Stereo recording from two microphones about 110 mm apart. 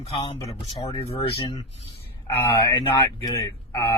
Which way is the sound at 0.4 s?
65° left (ahead or behind).